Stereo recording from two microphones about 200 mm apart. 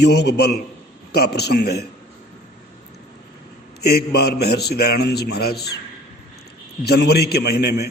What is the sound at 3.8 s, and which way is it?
A man's voice, 55° left (ahead or behind).